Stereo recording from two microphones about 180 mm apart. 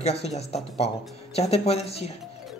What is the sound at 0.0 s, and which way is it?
Speech, 35° left (ahead or behind).